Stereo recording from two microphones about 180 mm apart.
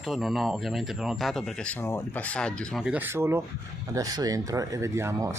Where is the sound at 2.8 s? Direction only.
10° right (ahead or behind).